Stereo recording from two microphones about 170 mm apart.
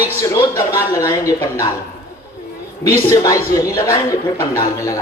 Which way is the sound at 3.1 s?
20° left (ahead or behind).